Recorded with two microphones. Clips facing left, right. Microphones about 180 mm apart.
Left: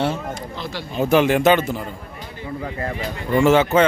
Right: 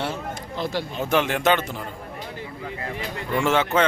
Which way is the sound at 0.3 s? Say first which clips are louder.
Right 2 dB; 50° right (ahead or behind).